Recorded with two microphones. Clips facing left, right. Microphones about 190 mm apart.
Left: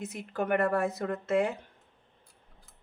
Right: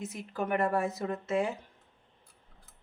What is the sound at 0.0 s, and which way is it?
Speech, 60° left (ahead or behind).